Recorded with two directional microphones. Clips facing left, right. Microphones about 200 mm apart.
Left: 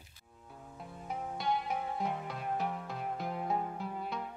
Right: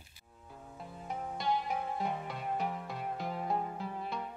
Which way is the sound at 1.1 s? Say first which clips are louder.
Even; centre (ahead or behind).